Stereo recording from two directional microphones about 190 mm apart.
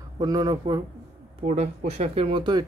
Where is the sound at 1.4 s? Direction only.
35° right (ahead or behind).